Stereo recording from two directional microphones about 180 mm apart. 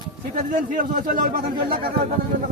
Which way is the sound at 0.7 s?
45° right (ahead or behind).